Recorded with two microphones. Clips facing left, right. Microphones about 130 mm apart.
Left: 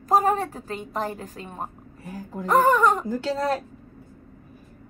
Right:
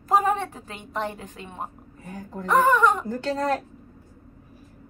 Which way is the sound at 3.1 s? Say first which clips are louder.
Even; 10° left (ahead or behind).